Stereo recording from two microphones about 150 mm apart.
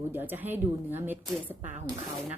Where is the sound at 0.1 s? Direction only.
15° right (ahead or behind).